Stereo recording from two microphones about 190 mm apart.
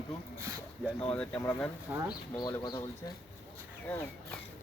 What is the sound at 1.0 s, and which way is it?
Speech, 5° left (ahead or behind).